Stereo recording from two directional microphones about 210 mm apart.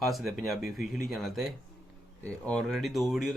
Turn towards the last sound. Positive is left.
turn(degrees=0)  # may be behind; listen again after turning